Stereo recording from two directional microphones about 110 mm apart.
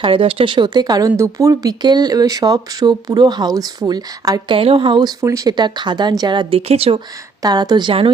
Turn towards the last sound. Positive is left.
turn(degrees=-40)  # may be behind; listen again after turning